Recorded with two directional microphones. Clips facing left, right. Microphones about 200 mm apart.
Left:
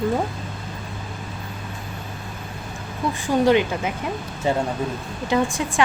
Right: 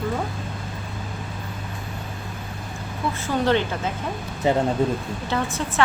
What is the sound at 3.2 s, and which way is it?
Speech, 15° left (ahead or behind).